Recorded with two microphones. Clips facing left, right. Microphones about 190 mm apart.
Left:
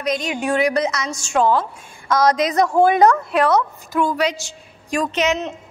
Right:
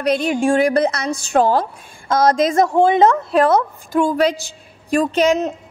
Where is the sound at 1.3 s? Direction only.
40° right (ahead or behind).